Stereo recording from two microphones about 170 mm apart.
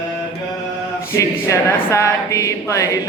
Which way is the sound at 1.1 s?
15° left (ahead or behind).